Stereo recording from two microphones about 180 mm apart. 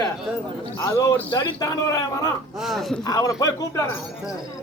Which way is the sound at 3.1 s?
20° left (ahead or behind).